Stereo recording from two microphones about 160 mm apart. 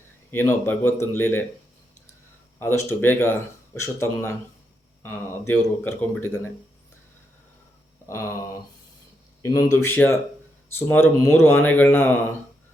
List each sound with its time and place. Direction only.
0.3 s speech: 15° left (ahead or behind)
2.6 s speech: 15° left (ahead or behind)
8.0 s a sound: 15° left (ahead or behind)
9.4 s speech: 20° left (ahead or behind)